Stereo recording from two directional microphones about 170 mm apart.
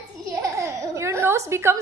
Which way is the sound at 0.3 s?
20° right (ahead or behind).